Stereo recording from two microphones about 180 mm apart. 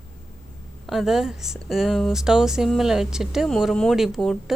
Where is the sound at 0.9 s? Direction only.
Centre (ahead or behind).